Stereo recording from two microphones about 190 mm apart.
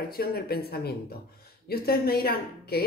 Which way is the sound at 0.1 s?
55° left (ahead or behind).